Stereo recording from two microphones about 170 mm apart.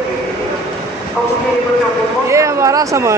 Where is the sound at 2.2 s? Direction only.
20° right (ahead or behind).